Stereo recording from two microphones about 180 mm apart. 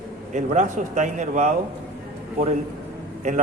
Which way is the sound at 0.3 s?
40° right (ahead or behind).